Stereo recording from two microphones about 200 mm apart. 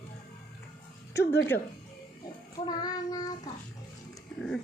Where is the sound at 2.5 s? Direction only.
20° left (ahead or behind).